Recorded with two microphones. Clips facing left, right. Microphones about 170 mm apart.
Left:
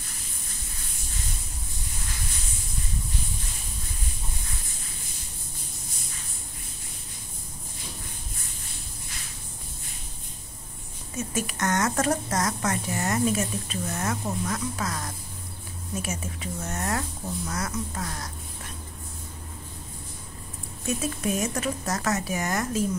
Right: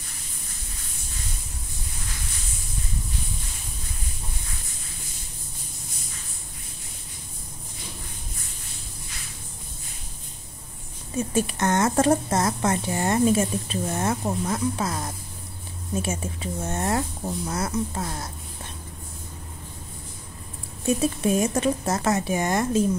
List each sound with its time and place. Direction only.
11.1 s a woman's voice: 30° right (ahead or behind)
20.8 s a woman's voice: 30° right (ahead or behind)